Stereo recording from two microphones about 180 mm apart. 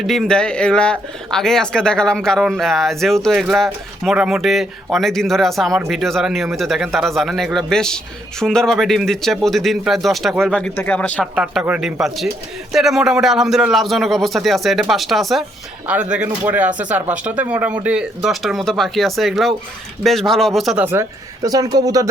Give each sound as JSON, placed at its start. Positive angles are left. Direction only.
{"t": 0.0, "sound": "speech", "side_deg": 0}
{"t": 11.3, "sound": "speech", "side_deg": -5}
{"t": 20.8, "sound": "speech", "side_deg": -15}